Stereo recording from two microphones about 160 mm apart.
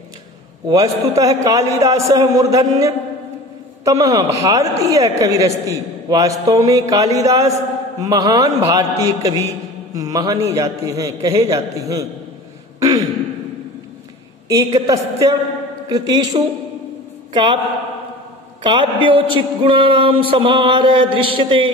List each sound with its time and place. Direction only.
0.7 s a man's voice: 20° right (ahead or behind)
14.5 s a man's voice: 25° right (ahead or behind)
18.6 s a man's voice: 30° right (ahead or behind)